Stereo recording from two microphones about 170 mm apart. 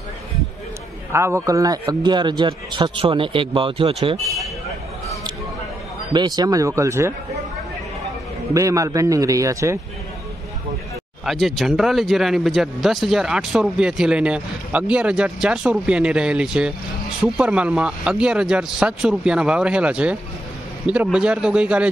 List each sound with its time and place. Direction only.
1.1 s a man's voice: 15° right (ahead or behind); by 3.9 s 30° right (ahead or behind)
6.1 s a man's voice: 25° right (ahead or behind)
8.5 s a man's voice: 20° right (ahead or behind)
11.2 s speech: centre (ahead or behind)